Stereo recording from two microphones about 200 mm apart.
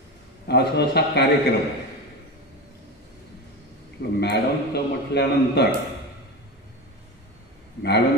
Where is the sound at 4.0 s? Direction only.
55° left (ahead or behind).